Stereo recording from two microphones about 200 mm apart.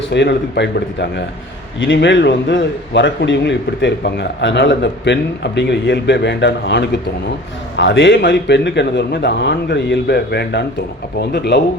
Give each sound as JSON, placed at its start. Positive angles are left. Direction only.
{"t": 0.1, "sound": "a man's voice", "side_deg": 60}
{"t": 1.8, "sound": "a man's voice", "side_deg": 65}